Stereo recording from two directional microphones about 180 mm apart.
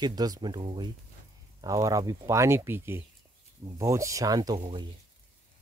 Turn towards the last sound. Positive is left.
turn(degrees=-25)  # may be behind; listen again after turning